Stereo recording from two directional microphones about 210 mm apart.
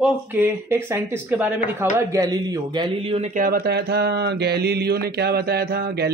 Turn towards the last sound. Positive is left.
turn(degrees=-50)  # may be behind; listen again after turning